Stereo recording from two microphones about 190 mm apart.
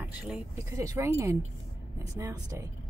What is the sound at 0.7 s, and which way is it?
Speech, 15° right (ahead or behind).